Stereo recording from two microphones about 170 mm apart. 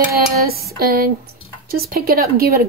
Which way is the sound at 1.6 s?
65° right (ahead or behind).